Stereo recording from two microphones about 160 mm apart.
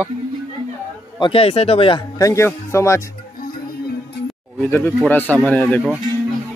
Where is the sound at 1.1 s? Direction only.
30° left (ahead or behind).